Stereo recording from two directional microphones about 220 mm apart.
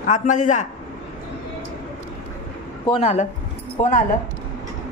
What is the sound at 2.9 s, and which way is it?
A woman's voice, 30° left (ahead or behind).